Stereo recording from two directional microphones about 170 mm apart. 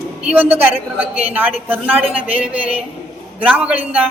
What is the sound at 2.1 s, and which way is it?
Speech, 35° right (ahead or behind).